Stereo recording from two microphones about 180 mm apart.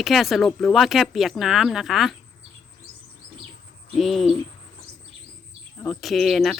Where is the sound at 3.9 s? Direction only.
Centre (ahead or behind).